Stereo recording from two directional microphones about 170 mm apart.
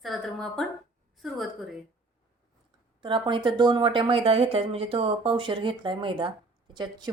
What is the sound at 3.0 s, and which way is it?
Speech, 30° right (ahead or behind).